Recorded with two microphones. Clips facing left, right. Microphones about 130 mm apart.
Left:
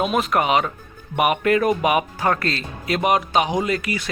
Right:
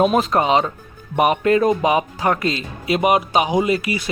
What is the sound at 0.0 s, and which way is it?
Speech, 35° right (ahead or behind).